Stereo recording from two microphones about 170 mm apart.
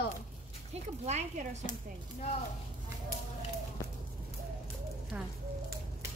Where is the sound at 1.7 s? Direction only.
50° left (ahead or behind).